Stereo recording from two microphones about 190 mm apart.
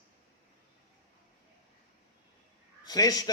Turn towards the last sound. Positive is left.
turn(degrees=20)  # may be behind; listen again after turning